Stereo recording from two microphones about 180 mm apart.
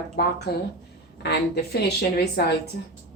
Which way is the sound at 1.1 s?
65° left (ahead or behind).